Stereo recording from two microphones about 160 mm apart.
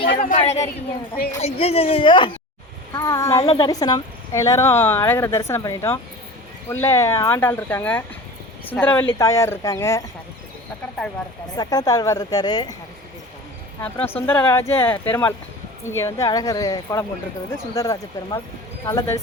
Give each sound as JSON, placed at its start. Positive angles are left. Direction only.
{"t": 0.2, "sound": "a woman's voice", "side_deg": 50}
{"t": 2.9, "sound": "speech", "side_deg": 20}
{"t": 3.4, "sound": "a woman's voice", "side_deg": 35}
{"t": 3.7, "sound": "speech", "side_deg": 25}
{"t": 11.5, "sound": "speech", "side_deg": 25}
{"t": 13.8, "sound": "speech", "side_deg": 15}